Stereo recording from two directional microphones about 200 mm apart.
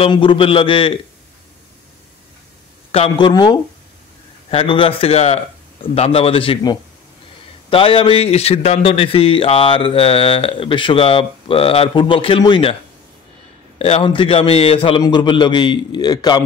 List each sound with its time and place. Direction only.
0.0 s a man's voice: 25° left (ahead or behind)
2.9 s a man's voice: 25° left (ahead or behind)
13.7 s a man's voice: 30° left (ahead or behind)